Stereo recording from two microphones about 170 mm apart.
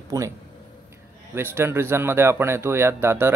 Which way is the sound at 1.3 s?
15° right (ahead or behind).